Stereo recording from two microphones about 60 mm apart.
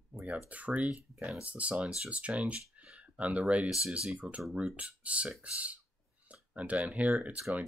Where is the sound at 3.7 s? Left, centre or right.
Centre.